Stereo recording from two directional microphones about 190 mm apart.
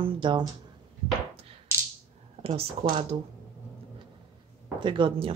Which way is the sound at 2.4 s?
30° right (ahead or behind).